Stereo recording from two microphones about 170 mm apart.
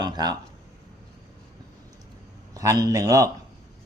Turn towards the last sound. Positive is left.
turn(degrees=-20)  # may be behind; listen again after turning